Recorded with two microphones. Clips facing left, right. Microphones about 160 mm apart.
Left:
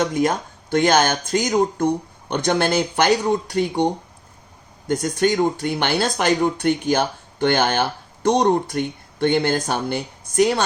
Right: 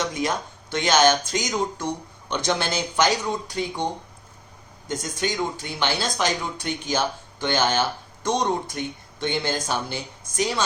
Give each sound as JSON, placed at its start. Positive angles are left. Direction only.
{"t": 0.0, "sound": "speech", "side_deg": 55}
{"t": 4.9, "sound": "speech", "side_deg": 60}